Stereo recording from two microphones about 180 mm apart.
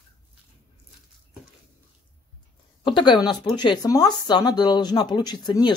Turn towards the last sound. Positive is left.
turn(degrees=25)  # may be behind; listen again after turning